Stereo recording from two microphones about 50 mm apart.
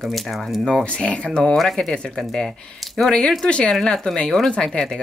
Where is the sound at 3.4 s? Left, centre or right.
Left.